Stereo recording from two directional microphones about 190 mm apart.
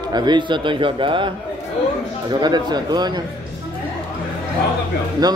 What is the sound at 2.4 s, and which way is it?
Speech, 20° right (ahead or behind).